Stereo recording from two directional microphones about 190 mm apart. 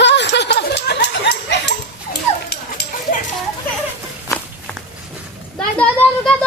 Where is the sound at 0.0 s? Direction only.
65° left (ahead or behind).